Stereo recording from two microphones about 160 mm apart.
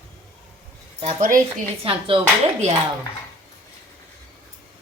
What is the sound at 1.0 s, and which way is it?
Speech, 55° right (ahead or behind).